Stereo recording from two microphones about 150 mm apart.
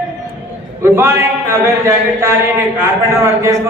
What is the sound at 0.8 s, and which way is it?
Speech, 15° right (ahead or behind).